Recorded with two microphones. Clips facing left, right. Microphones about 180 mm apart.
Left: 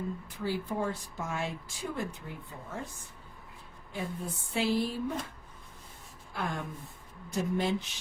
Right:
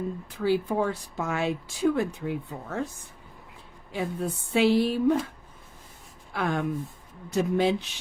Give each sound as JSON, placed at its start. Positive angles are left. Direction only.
{"t": 0.3, "sound": "speech", "side_deg": -70}
{"t": 3.9, "sound": "speech", "side_deg": -80}
{"t": 6.3, "sound": "speech", "side_deg": -70}